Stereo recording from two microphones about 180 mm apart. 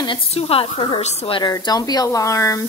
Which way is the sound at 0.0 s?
30° left (ahead or behind).